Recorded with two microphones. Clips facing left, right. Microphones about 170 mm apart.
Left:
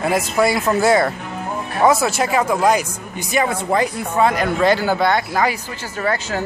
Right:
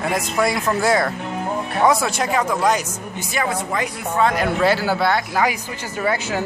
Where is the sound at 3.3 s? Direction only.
25° left (ahead or behind).